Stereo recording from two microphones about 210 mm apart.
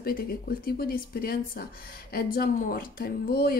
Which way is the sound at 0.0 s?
45° left (ahead or behind).